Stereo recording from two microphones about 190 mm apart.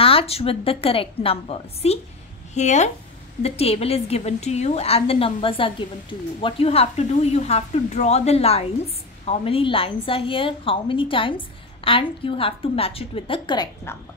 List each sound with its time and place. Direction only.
0.0 s a woman's voice: 30° left (ahead or behind)